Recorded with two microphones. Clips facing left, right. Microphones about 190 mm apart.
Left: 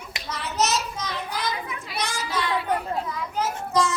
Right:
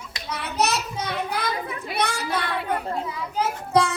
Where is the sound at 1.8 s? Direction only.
60° right (ahead or behind).